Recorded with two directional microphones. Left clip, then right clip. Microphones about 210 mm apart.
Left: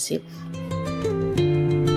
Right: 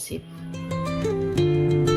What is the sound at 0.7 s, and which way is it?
Music, centre (ahead or behind).